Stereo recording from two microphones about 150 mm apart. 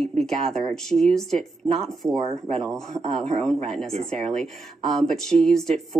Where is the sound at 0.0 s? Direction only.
5° left (ahead or behind).